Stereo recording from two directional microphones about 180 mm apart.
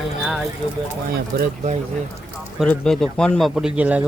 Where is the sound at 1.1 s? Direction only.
55° right (ahead or behind).